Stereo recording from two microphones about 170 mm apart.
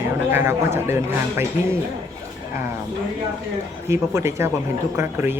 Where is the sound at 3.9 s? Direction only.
15° right (ahead or behind).